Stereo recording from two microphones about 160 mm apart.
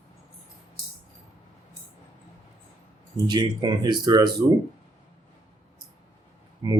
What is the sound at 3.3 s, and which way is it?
Speech, 25° right (ahead or behind).